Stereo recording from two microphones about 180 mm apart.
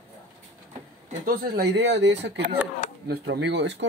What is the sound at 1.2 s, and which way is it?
Speech, 55° right (ahead or behind).